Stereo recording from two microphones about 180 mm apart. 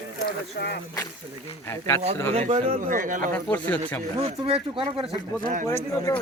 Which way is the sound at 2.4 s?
40° right (ahead or behind).